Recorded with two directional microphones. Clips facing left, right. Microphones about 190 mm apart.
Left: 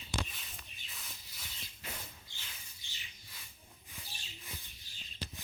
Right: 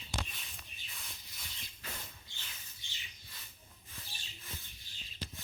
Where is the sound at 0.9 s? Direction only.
Centre (ahead or behind).